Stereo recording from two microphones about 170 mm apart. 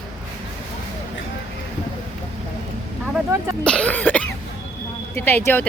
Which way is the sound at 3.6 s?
5° left (ahead or behind).